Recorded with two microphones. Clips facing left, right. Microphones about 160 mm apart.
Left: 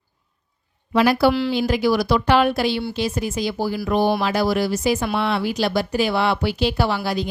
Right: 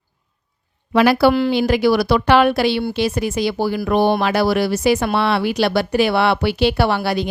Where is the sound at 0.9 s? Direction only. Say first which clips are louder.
Right 3 dB; 75° right (ahead or behind).